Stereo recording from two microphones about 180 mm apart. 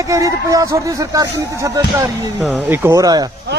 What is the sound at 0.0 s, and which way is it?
Speech, 20° right (ahead or behind).